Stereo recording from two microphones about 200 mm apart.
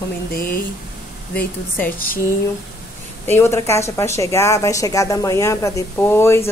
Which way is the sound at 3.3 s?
10° left (ahead or behind).